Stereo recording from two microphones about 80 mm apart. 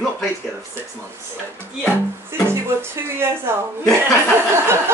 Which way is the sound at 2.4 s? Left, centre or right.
Right.